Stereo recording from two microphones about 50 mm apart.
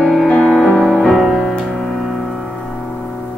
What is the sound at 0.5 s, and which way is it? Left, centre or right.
Music, right.